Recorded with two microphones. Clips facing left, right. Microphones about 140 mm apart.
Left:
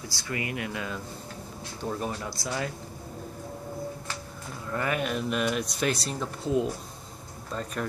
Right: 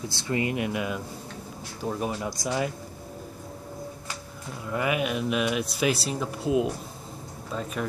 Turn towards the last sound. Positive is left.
turn(degrees=-5)  # may be behind; listen again after turning